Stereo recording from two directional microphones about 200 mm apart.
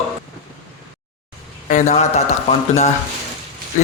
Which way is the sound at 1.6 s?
35° left (ahead or behind).